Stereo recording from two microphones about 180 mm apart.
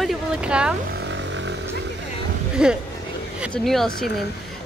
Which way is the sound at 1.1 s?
90° right.